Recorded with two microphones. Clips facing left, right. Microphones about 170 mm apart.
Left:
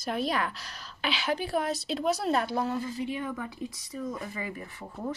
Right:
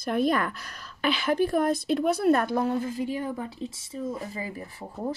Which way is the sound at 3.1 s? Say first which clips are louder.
Right 3 dB; 30° right (ahead or behind).